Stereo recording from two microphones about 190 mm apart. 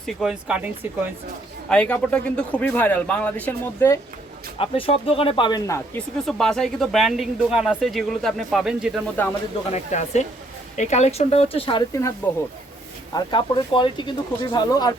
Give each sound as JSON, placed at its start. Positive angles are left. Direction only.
{"t": 0.0, "sound": "speech", "side_deg": 0}
{"t": 1.7, "sound": "speech", "side_deg": 5}
{"t": 4.5, "sound": "speech", "side_deg": 30}
{"t": 6.2, "sound": "speech", "side_deg": 0}
{"t": 9.2, "sound": "speech", "side_deg": 10}
{"t": 9.7, "sound": "speech", "side_deg": 35}
{"t": 12.2, "sound": "speech", "side_deg": 15}
{"t": 13.1, "sound": "speech", "side_deg": 25}